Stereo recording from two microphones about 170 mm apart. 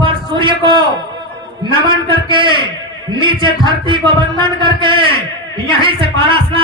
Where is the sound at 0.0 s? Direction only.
30° right (ahead or behind).